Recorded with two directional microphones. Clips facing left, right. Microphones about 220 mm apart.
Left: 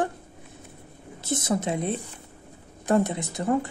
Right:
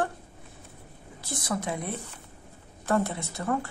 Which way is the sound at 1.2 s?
20° left (ahead or behind).